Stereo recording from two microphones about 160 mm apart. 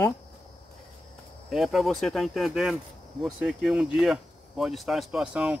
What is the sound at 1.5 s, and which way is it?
Speech, centre (ahead or behind).